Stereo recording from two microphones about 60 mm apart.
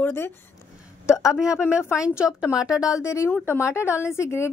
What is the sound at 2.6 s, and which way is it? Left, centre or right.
A woman's voice, left.